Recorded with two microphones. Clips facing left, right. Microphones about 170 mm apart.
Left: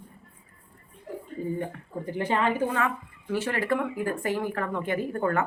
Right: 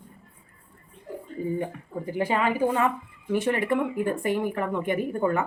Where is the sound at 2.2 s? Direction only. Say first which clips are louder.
Right 2 dB; 10° right (ahead or behind).